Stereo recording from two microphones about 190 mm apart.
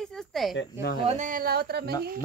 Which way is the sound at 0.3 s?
Centre (ahead or behind).